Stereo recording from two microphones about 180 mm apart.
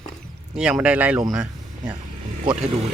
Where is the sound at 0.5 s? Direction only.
5° right (ahead or behind).